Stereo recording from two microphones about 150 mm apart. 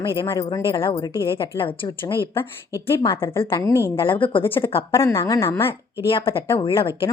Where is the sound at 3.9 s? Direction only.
35° left (ahead or behind).